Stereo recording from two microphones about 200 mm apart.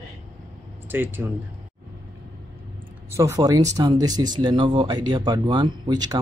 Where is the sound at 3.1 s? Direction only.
15° right (ahead or behind).